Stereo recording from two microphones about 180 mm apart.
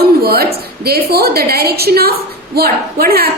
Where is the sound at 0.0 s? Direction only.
60° right (ahead or behind).